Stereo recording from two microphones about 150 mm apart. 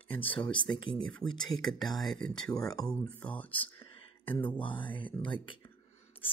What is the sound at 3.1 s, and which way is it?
Speech, 10° left (ahead or behind).